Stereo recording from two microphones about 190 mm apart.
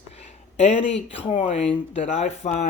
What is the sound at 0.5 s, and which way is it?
Speech, 35° left (ahead or behind).